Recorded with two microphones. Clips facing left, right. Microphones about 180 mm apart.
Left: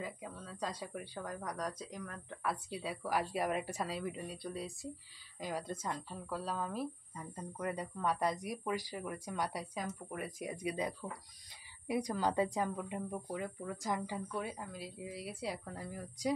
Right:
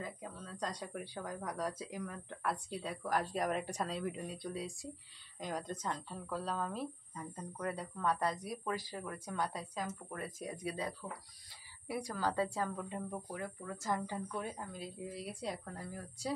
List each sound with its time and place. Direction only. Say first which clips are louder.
0.0 s speech: left 1 dB; 5° left (ahead or behind)